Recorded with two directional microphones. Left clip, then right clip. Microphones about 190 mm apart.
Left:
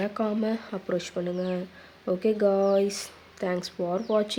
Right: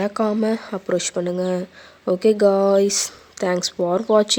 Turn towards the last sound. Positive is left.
turn(degrees=-45)  # may be behind; listen again after turning